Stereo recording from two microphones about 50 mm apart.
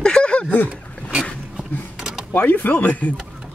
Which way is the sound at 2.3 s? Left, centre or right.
Left.